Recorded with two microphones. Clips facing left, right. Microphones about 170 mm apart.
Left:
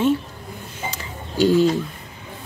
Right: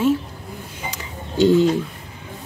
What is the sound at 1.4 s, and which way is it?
Speech, 20° right (ahead or behind).